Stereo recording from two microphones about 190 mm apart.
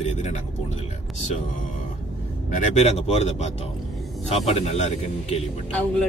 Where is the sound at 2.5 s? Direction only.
35° left (ahead or behind).